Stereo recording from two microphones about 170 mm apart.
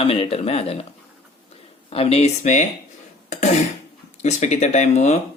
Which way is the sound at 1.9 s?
35° left (ahead or behind).